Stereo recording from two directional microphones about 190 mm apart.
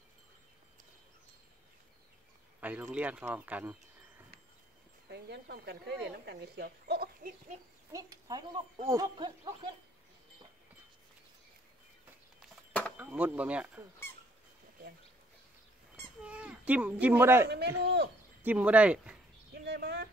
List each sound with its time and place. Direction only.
2.6 s speech: 5° right (ahead or behind)
5.1 s speech: 60° right (ahead or behind)
7.9 s speech: 20° right (ahead or behind)
12.4 s a sound: 5° left (ahead or behind)
13.0 s speech: 10° right (ahead or behind)
16.2 s speech: 5° right (ahead or behind)
17.5 s speech: 60° right (ahead or behind)
18.4 s speech: 10° right (ahead or behind)
19.6 s a sound: 65° right (ahead or behind)